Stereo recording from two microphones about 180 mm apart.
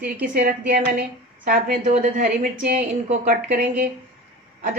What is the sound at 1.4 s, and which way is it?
Speech, 50° right (ahead or behind).